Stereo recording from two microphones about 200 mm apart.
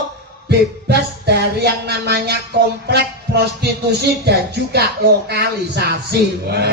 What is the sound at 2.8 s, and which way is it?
Speech, 55° right (ahead or behind).